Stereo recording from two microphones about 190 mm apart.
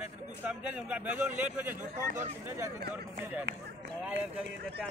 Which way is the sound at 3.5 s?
65° right (ahead or behind).